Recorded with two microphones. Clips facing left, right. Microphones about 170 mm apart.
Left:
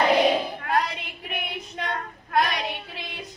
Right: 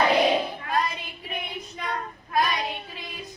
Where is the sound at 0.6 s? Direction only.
70° left (ahead or behind).